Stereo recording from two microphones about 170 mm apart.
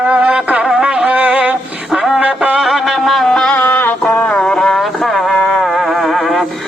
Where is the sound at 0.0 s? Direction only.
10° right (ahead or behind).